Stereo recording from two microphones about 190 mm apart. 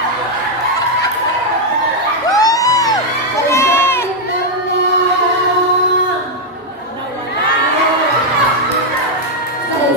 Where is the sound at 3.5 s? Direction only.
15° left (ahead or behind).